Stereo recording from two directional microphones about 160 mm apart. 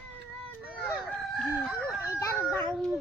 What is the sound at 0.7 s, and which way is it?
Chicken, 10° left (ahead or behind).